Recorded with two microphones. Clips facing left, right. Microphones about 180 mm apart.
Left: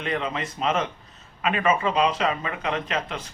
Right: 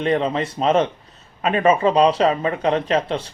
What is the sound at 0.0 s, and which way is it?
Speech, 35° right (ahead or behind).